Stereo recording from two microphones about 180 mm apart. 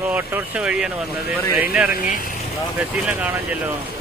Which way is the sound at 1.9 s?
55° left (ahead or behind).